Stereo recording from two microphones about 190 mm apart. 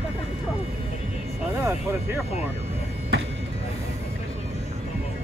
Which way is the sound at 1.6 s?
10° right (ahead or behind).